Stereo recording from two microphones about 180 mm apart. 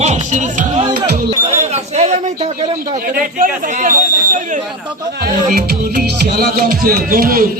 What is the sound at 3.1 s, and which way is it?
Music, 50° right (ahead or behind).